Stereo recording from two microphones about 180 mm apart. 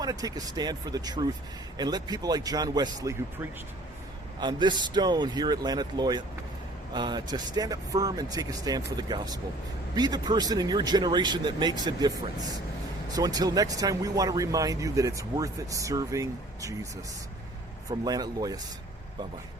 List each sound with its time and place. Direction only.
0.0 s speech: 20° right (ahead or behind)
17.8 s speech: 20° right (ahead or behind)